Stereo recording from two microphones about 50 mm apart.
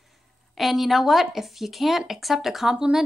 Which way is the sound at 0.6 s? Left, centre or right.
Centre.